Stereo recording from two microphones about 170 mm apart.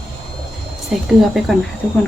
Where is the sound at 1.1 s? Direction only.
Centre (ahead or behind).